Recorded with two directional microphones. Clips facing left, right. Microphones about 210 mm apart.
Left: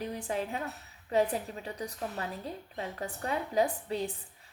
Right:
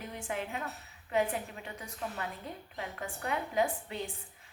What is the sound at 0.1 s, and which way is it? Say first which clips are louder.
A woman's voice: left 4 dB; 35° left (ahead or behind).